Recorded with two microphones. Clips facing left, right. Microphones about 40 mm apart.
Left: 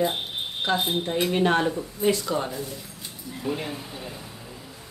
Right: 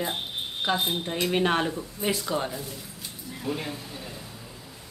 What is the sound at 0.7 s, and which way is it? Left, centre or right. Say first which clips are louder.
Speech: left 3 dB; centre.